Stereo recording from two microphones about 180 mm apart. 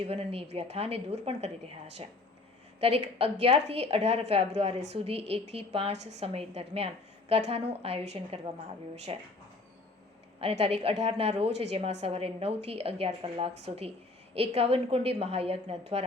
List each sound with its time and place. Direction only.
0.0 s a woman's voice: 35° right (ahead or behind)
10.4 s a woman's voice: 35° right (ahead or behind)